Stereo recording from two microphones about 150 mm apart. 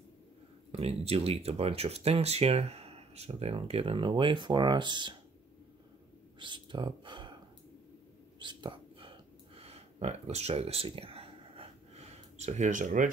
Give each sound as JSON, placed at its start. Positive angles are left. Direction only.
{"t": 0.7, "sound": "speech", "side_deg": -40}
{"t": 6.4, "sound": "speech", "side_deg": -30}
{"t": 8.4, "sound": "whispering", "side_deg": -30}